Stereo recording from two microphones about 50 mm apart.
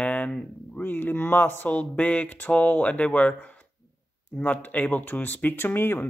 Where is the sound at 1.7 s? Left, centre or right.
Left.